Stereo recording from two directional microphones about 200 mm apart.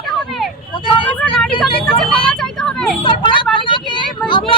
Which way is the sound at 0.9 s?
25° left (ahead or behind).